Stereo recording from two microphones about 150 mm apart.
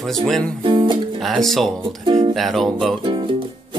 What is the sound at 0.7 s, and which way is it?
Speech, 35° right (ahead or behind).